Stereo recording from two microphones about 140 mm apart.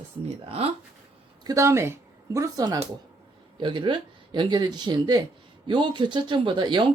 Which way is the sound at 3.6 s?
35° right (ahead or behind).